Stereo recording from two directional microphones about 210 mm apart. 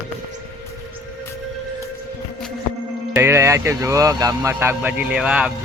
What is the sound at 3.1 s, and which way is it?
Speech, 10° right (ahead or behind).